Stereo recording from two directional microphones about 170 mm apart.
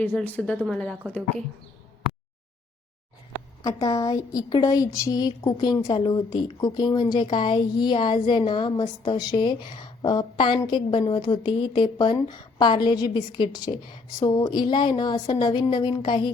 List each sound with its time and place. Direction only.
0.0 s a woman's voice: 10° left (ahead or behind)
3.6 s a woman's voice: 20° left (ahead or behind)